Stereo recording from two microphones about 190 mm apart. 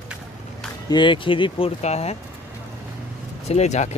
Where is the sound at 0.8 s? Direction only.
25° left (ahead or behind).